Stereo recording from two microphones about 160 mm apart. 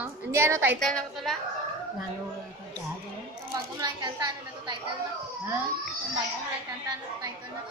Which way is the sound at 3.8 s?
25° right (ahead or behind).